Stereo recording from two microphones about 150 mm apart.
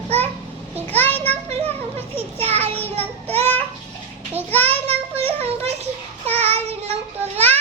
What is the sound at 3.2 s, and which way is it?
Speech, 40° right (ahead or behind).